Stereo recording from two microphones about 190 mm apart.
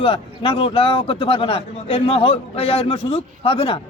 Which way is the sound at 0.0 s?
25° left (ahead or behind).